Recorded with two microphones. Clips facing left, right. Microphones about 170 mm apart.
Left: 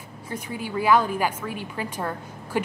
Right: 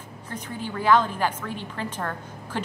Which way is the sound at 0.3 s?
10° left (ahead or behind).